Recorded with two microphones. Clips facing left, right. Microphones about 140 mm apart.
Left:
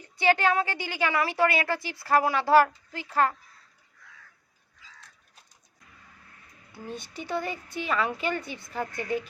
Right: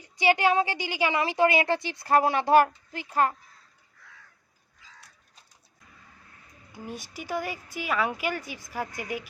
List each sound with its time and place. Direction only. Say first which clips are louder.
0.0 s a woman's voice: right 1 dB; 15° right (ahead or behind)
6.7 s speech: left 1 dB; 10° right (ahead or behind)